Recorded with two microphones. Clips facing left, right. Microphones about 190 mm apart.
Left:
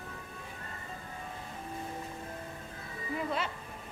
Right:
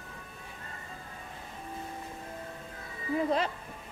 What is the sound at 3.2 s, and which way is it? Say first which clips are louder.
Speech: right 6 dB; 35° right (ahead or behind).